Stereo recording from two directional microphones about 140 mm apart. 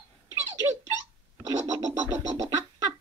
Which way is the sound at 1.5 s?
25° right (ahead or behind).